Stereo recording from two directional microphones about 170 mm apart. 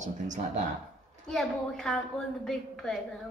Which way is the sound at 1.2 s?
5° left (ahead or behind).